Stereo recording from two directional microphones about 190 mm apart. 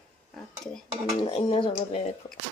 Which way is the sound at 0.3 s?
Centre (ahead or behind).